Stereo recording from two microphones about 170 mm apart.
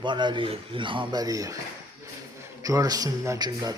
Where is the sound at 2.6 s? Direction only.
20° right (ahead or behind).